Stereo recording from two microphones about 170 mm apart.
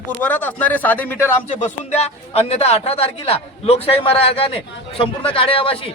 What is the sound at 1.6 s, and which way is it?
A man's voice, 40° left (ahead or behind).